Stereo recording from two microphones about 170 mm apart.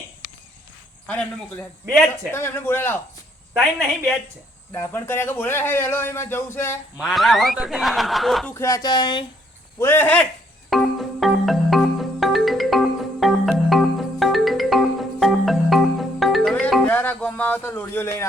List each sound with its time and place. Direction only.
1.0 s a man's voice: 5° left (ahead or behind)
4.7 s a man's voice: 15° left (ahead or behind)
7.1 s speech: centre (ahead or behind)
8.5 s speech: 15° left (ahead or behind)
9.7 s a man's voice: 15° left (ahead or behind)
10.7 s music: centre (ahead or behind); by 18.3 s 15° left (ahead or behind)